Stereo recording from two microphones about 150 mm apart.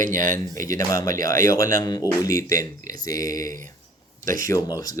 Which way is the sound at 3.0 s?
25° left (ahead or behind).